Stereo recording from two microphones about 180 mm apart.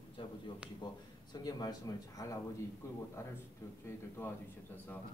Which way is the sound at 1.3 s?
20° left (ahead or behind).